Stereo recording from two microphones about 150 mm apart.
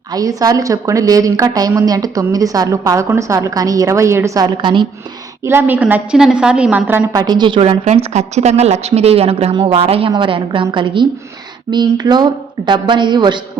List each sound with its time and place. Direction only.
0.1 s a woman's voice: 25° right (ahead or behind)
4.4 s speech: 30° right (ahead or behind)
5.5 s a woman's voice: 15° right (ahead or behind)
7.1 s speech: 25° right (ahead or behind)